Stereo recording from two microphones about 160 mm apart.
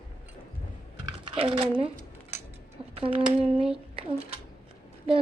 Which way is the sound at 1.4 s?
35° right (ahead or behind).